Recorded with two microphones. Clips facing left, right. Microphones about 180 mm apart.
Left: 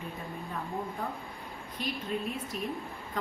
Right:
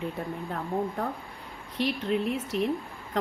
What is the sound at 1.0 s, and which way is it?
A woman's voice, 70° right (ahead or behind).